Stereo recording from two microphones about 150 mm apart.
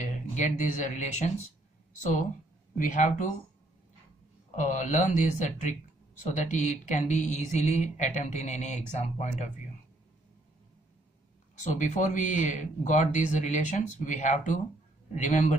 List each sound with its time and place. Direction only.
0.0 s speech: 55° left (ahead or behind)
2.8 s speech: 55° left (ahead or behind)
4.6 s speech: 50° left (ahead or behind)
11.6 s speech: 50° left (ahead or behind)